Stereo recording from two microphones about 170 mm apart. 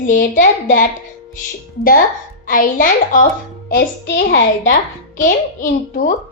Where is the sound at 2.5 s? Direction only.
50° left (ahead or behind).